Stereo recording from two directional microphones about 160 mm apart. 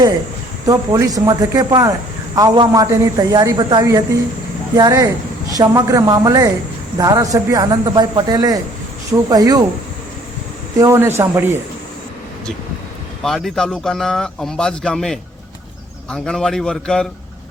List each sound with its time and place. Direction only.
0.7 s a man's voice: 20° right (ahead or behind)
10.8 s speech: 15° right (ahead or behind)
13.2 s speech: centre (ahead or behind)